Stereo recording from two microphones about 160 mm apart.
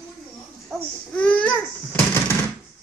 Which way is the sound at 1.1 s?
10° left (ahead or behind).